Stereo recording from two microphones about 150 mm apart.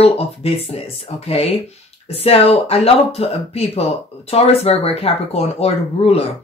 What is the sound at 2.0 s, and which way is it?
A man's voice, 40° left (ahead or behind).